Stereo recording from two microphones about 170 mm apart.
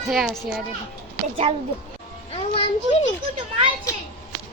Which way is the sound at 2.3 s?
35° left (ahead or behind).